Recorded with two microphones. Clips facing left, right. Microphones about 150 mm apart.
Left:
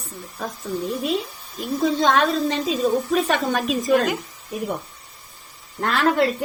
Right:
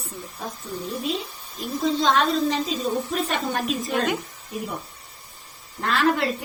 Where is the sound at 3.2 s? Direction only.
85° left.